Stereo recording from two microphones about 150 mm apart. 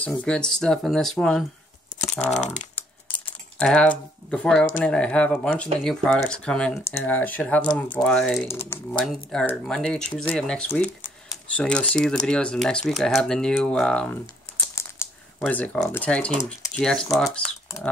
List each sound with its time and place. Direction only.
0.0 s speech: 10° left (ahead or behind)
1.9 s computer keyboard: 60° left (ahead or behind)
2.2 s speech: 55° left (ahead or behind)
3.5 s speech: 5° left (ahead or behind)
8.5 s speech: 15° left (ahead or behind)
9.0 s speech: 5° left (ahead or behind)
14.8 s crumpling: 15° left (ahead or behind)
15.9 s speech: 10° left (ahead or behind)